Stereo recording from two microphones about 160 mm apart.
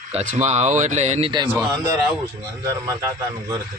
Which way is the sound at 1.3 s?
25° right (ahead or behind).